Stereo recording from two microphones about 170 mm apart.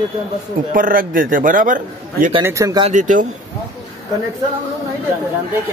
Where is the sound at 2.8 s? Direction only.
50° right (ahead or behind).